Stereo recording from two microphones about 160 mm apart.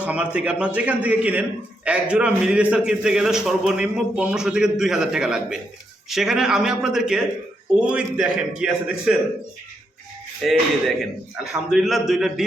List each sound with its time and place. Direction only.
0.0 s a man's voice: 10° right (ahead or behind)
10.4 s a man's voice: centre (ahead or behind)